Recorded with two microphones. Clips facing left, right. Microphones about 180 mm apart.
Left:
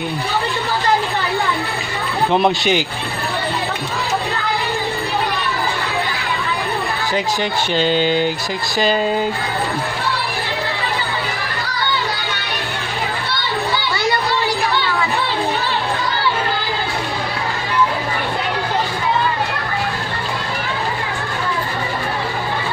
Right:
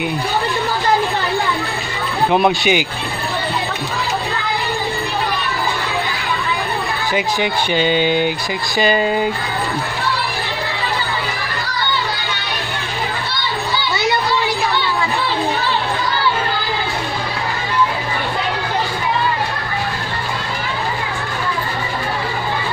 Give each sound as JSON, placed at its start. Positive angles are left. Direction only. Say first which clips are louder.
{"t": 2.3, "sound": "speech", "louder": "right 1 dB", "side_deg": -10}
{"t": 7.9, "sound": "speech", "louder": "even", "side_deg": -55}
{"t": 8.9, "sound": "speech", "louder": "right 1 dB", "side_deg": -5}